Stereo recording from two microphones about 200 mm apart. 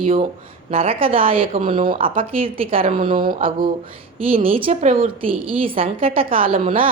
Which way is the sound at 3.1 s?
45° right (ahead or behind).